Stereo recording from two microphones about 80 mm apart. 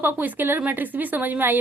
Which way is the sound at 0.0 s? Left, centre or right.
Right.